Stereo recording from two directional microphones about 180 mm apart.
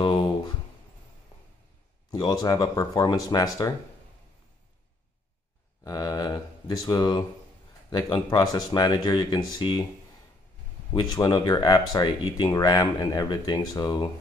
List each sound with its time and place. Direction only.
0.0 s a sound: 30° left (ahead or behind)
2.0 s speech: 20° left (ahead or behind)
5.9 s speech: 20° left (ahead or behind)
10.9 s speech: 25° left (ahead or behind)